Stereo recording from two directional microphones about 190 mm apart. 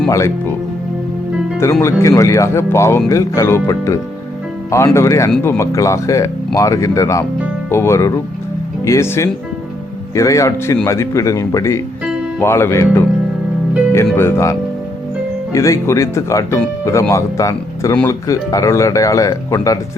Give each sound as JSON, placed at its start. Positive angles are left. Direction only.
{"t": 0.1, "sound": "speech", "side_deg": 15}
{"t": 1.8, "sound": "speech", "side_deg": 15}
{"t": 15.5, "sound": "speech", "side_deg": 15}